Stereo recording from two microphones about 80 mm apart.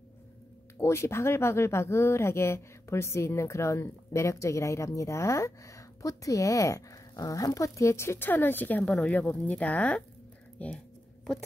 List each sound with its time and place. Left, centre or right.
0.7 s speech: left; by 10.7 s centre